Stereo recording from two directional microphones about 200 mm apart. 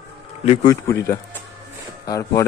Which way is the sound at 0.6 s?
15° left (ahead or behind).